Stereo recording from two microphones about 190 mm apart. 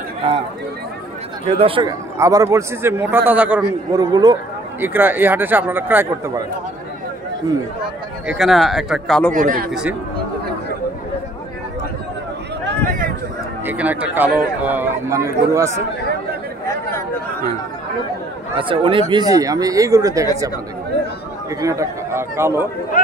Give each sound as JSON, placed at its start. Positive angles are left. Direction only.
{"t": 1.6, "sound": "speech", "side_deg": -30}
{"t": 2.1, "sound": "speech", "side_deg": -15}
{"t": 3.9, "sound": "speech", "side_deg": -20}
{"t": 4.7, "sound": "speech", "side_deg": -10}
{"t": 8.3, "sound": "speech", "side_deg": 0}
{"t": 9.3, "sound": "a man's voice", "side_deg": -45}
{"t": 9.7, "sound": "speech", "side_deg": -5}
{"t": 12.8, "sound": "a sound", "side_deg": -45}
{"t": 13.7, "sound": "speech", "side_deg": -10}
{"t": 18.6, "sound": "speech", "side_deg": -25}
{"t": 21.5, "sound": "speech", "side_deg": -15}